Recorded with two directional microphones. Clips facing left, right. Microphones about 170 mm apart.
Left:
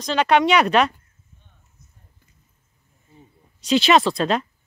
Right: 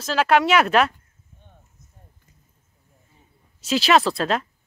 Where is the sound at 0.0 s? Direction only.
5° right (ahead or behind).